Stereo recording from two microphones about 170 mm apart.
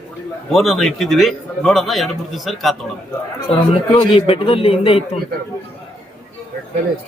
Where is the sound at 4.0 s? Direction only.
35° left (ahead or behind).